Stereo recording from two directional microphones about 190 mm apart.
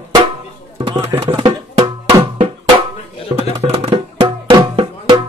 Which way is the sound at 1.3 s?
25° right (ahead or behind).